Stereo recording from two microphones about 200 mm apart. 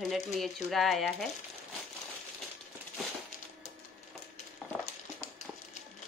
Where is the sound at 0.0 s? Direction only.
Centre (ahead or behind).